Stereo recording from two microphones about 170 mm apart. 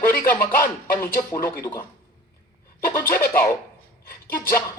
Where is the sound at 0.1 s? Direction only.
15° left (ahead or behind).